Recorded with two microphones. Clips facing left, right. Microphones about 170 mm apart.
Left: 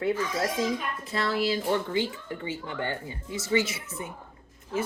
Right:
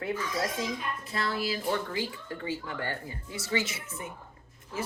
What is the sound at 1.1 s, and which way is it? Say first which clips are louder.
Speech: left 5 dB; 25° left (ahead or behind).